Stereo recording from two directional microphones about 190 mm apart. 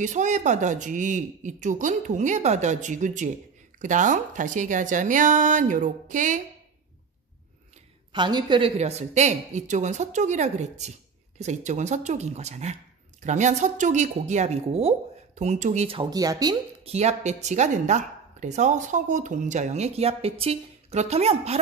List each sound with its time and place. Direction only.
0.0 s a woman's voice: 40° right (ahead or behind)
8.1 s speech: 25° right (ahead or behind)
16.8 s speech: 35° right (ahead or behind)